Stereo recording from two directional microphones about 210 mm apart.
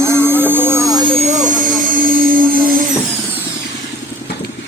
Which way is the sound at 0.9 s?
25° right (ahead or behind).